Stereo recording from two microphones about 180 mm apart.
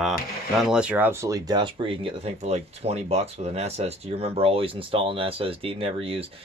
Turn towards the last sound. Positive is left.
turn(degrees=-30)  # may be behind; listen again after turning